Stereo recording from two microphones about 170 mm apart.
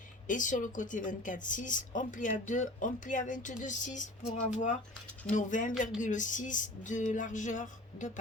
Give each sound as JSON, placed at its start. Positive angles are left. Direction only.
{"t": 0.3, "sound": "a woman's voice", "side_deg": 50}